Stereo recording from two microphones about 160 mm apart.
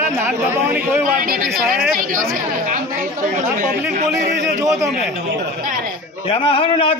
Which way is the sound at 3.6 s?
50° right (ahead or behind).